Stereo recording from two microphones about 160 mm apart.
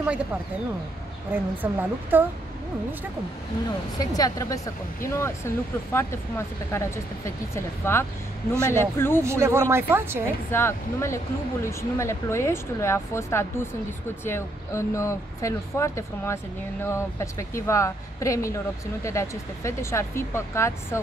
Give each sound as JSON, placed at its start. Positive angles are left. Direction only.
{"t": 1.3, "sound": "speech", "side_deg": -10}
{"t": 4.2, "sound": "speech", "side_deg": 20}
{"t": 9.2, "sound": "speech", "side_deg": -15}
{"t": 10.5, "sound": "speech", "side_deg": 15}